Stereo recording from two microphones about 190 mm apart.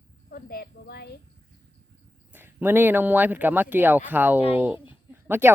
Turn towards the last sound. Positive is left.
turn(degrees=-10)  # may be behind; listen again after turning